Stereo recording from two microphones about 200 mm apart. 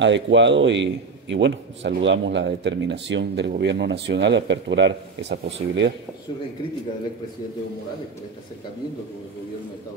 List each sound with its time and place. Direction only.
0.0 s speech: 65° right (ahead or behind)